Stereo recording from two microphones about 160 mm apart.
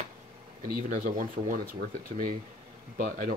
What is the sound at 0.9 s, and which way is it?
Speech, 55° right (ahead or behind).